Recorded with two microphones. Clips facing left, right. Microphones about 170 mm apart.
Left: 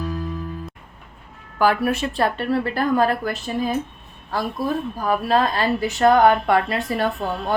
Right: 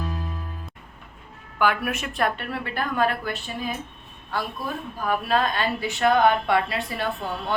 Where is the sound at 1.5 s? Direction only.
35° left (ahead or behind).